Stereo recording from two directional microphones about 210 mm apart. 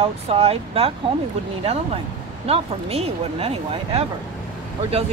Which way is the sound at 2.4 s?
30° right (ahead or behind).